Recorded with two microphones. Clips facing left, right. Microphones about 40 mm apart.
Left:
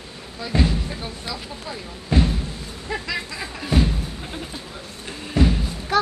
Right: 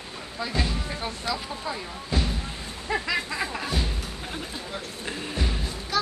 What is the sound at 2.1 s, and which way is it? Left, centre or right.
Speech, left.